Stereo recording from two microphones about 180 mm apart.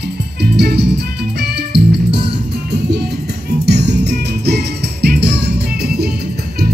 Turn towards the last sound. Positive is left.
turn(degrees=-65)  # may be behind; listen again after turning